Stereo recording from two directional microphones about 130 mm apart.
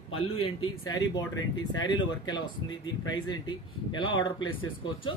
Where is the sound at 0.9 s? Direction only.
30° left (ahead or behind).